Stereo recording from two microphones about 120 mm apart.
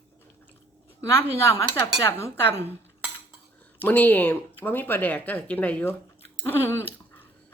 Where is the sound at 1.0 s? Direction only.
20° left (ahead or behind).